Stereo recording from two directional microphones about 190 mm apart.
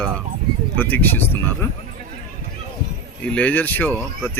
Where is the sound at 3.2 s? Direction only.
5° left (ahead or behind).